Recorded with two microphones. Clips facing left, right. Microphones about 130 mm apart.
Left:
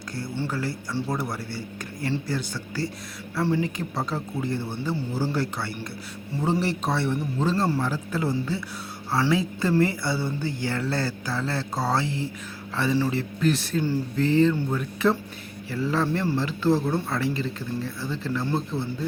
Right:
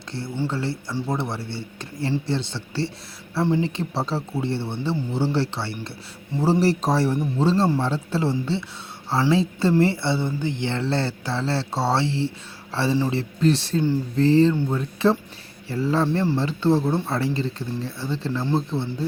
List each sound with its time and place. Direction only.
0.3 s speech: 25° right (ahead or behind)